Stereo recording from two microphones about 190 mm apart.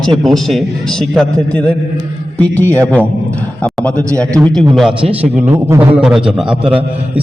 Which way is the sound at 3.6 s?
5° left (ahead or behind).